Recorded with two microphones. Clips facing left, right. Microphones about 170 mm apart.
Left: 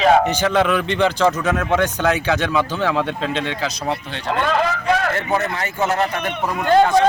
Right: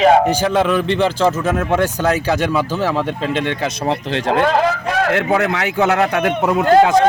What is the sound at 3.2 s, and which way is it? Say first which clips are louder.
A man's voice: right 3 dB; 50° right (ahead or behind).